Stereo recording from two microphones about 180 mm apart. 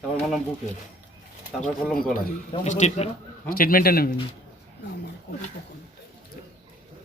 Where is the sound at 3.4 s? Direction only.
55° left (ahead or behind).